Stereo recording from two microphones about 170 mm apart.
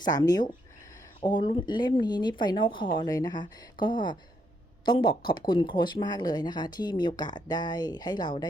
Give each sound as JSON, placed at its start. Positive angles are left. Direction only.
{"t": 0.0, "sound": "speech", "side_deg": 25}